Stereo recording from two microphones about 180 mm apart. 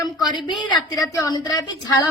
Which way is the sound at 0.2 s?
25° left (ahead or behind).